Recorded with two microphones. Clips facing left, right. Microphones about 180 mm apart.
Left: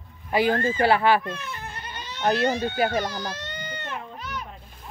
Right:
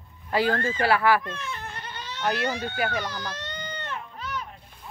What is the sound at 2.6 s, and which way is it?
Speech, 35° left (ahead or behind).